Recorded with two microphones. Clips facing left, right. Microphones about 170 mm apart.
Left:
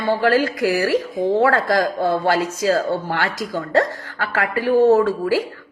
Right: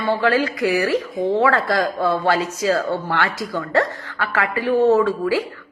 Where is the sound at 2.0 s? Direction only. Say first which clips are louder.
Left 1 dB; 45° left (ahead or behind).